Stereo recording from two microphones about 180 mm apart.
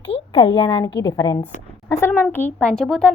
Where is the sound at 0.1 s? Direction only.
30° left (ahead or behind).